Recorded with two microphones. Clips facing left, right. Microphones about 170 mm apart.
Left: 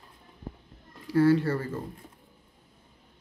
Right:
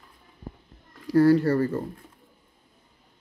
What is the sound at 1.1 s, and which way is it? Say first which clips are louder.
Speech: right 4 dB; 40° right (ahead or behind).